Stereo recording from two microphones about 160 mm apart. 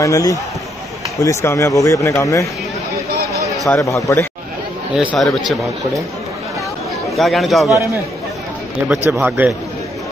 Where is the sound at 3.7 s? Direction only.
20° left (ahead or behind).